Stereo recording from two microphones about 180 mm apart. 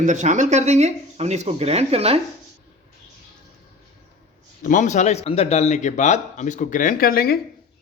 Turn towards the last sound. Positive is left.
turn(degrees=55)  # may be behind; listen again after turning